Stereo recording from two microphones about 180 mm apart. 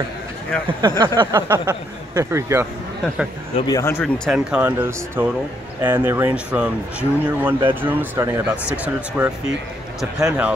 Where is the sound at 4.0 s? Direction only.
5° right (ahead or behind).